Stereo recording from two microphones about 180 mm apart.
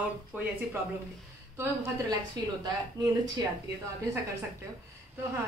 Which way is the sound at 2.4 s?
25° right (ahead or behind).